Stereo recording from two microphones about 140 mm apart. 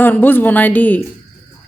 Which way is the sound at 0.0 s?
15° left (ahead or behind).